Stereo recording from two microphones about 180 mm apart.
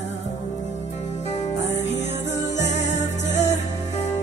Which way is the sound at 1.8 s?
40° left (ahead or behind).